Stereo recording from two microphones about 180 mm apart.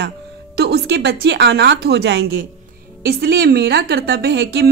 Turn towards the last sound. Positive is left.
turn(degrees=-65)  # may be behind; listen again after turning